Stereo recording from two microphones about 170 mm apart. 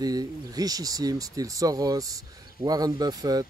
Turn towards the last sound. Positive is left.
turn(degrees=-20)  # may be behind; listen again after turning